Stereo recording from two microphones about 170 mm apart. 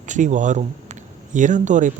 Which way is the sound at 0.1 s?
45° right (ahead or behind).